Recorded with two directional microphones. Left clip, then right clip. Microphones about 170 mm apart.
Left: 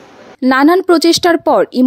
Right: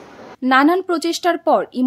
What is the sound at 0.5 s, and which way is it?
Speech, 45° left (ahead or behind).